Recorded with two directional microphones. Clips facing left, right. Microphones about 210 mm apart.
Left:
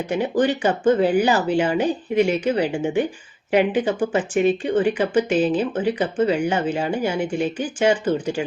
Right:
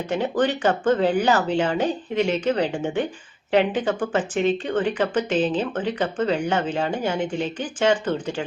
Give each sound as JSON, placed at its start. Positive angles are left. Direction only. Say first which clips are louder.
{"t": 0.1, "sound": "speech", "louder": "left 2 dB", "side_deg": 10}